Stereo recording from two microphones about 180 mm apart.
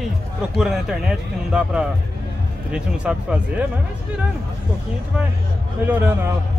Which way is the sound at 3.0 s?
5° right (ahead or behind).